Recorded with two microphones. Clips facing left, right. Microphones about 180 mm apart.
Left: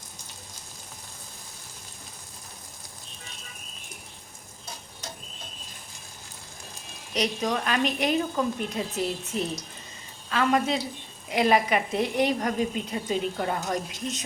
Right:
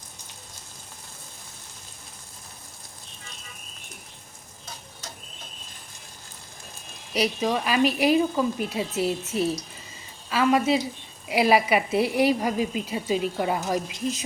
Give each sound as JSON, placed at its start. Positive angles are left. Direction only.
{"t": 7.1, "sound": "a woman's voice", "side_deg": -5}